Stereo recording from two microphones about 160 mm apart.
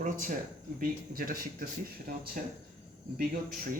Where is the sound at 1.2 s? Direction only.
65° right (ahead or behind).